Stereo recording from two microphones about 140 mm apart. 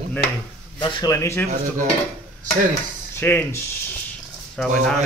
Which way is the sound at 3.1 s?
15° left (ahead or behind).